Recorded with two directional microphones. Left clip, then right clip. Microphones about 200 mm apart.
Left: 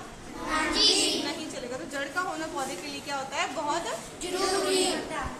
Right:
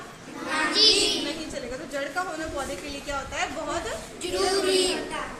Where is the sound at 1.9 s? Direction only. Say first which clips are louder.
Right 2 dB; 15° left (ahead or behind).